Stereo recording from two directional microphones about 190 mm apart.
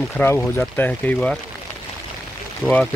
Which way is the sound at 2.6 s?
Centre (ahead or behind).